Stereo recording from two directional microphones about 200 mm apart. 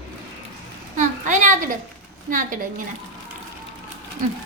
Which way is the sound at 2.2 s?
40° right (ahead or behind).